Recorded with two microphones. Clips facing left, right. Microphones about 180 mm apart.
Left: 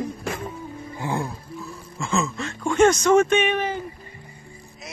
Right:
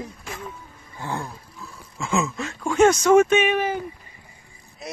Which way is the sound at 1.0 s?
15° left (ahead or behind).